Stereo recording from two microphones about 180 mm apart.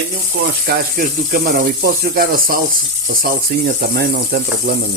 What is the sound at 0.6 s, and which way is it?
Speech, 50° right (ahead or behind).